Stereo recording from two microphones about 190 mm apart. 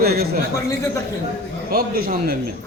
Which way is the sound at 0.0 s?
55° right (ahead or behind).